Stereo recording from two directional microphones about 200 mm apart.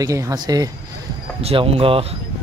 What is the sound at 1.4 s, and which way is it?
Speech, 30° right (ahead or behind).